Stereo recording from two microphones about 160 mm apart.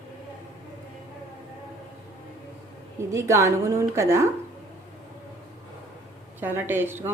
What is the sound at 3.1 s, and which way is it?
A woman's voice, 20° right (ahead or behind).